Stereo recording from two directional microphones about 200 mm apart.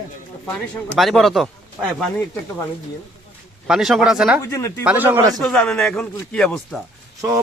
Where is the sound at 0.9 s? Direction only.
Centre (ahead or behind).